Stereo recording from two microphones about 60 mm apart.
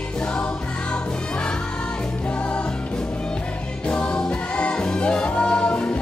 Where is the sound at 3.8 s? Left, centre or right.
Centre.